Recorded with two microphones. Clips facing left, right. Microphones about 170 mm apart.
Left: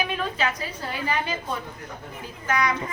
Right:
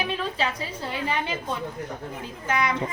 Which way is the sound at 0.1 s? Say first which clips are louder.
Left 1 dB; 30° right (ahead or behind).